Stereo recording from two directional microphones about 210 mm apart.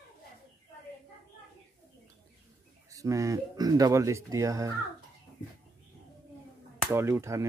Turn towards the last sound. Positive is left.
turn(degrees=-10)  # may be behind; listen again after turning